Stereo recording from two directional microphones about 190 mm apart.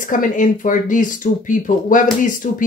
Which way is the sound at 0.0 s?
45° left (ahead or behind).